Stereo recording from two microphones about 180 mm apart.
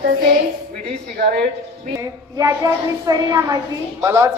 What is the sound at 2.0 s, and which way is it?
A woman's voice, 20° right (ahead or behind).